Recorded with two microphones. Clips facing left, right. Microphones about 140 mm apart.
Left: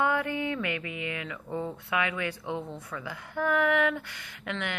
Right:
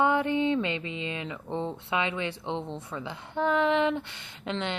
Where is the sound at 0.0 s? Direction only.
20° right (ahead or behind).